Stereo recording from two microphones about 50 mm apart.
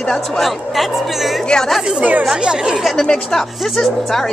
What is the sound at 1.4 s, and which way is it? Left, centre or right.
Speech, centre.